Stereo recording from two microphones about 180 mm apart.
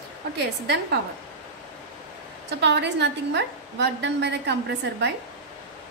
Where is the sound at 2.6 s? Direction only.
70° right (ahead or behind).